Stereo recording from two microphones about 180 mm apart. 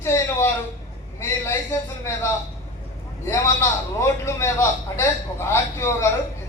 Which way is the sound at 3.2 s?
15° left (ahead or behind).